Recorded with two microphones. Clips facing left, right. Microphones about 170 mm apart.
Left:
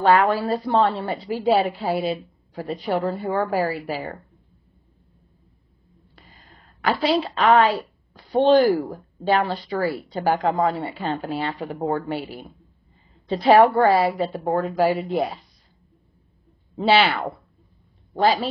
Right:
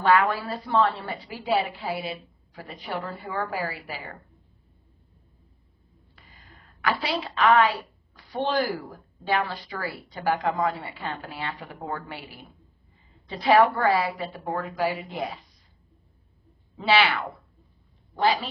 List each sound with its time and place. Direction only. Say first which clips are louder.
0.0 s a woman's voice: left 4 dB; 30° left (ahead or behind)
6.8 s a woman's voice: left 7 dB; 30° left (ahead or behind)
13.3 s a woman's voice: left 5 dB; 30° left (ahead or behind)
16.7 s a woman's voice: left 4 dB; 30° left (ahead or behind)